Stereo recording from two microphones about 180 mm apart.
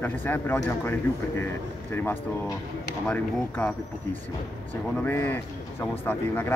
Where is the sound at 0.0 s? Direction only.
10° left (ahead or behind).